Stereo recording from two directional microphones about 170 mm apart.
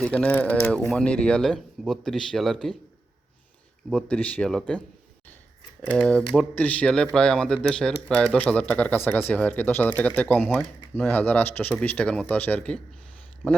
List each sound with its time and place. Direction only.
0.0 s speech: 10° left (ahead or behind)
3.8 s speech: 5° left (ahead or behind)
5.8 s speech: 5° left (ahead or behind)